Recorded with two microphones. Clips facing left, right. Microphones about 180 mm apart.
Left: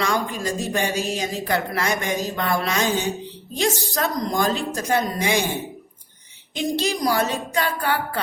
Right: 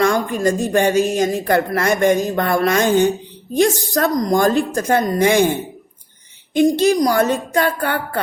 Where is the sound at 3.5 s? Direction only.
60° right (ahead or behind).